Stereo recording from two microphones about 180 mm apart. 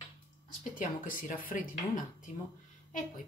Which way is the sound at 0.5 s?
50° left (ahead or behind).